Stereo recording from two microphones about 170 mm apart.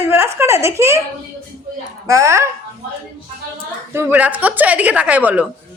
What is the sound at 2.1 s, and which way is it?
Speech, 15° right (ahead or behind).